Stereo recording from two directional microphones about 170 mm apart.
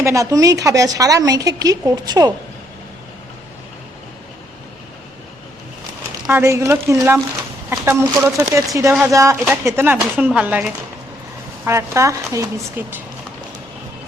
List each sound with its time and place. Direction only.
0.0 s speech: 20° right (ahead or behind)
6.2 s speech: 15° right (ahead or behind)